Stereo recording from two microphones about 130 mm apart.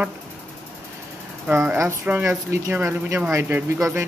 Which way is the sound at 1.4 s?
15° right (ahead or behind).